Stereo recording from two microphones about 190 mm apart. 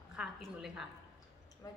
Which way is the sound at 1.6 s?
15° left (ahead or behind).